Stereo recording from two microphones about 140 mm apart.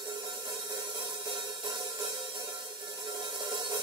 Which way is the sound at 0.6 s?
25° right (ahead or behind).